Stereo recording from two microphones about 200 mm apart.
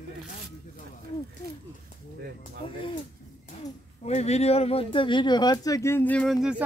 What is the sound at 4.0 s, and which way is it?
Speech, 35° left (ahead or behind).